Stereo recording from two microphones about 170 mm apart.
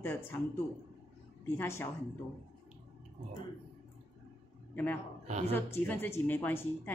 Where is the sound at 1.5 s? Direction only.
15° left (ahead or behind).